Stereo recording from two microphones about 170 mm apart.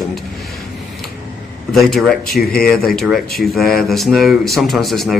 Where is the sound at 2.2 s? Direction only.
60° left (ahead or behind).